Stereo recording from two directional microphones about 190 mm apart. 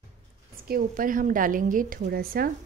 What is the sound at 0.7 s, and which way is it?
A woman's voice, 50° right (ahead or behind).